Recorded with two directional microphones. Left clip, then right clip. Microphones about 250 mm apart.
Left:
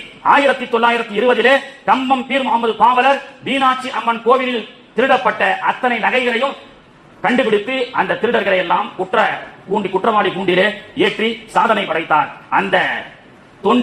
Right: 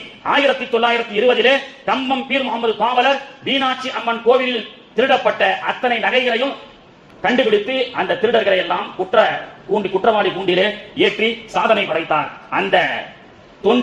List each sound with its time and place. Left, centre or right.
0.2 s a man's voice: left